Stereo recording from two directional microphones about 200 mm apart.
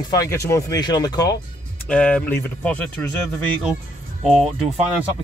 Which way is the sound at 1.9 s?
5° left (ahead or behind).